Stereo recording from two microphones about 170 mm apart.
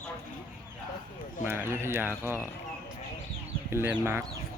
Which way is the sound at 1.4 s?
15° right (ahead or behind).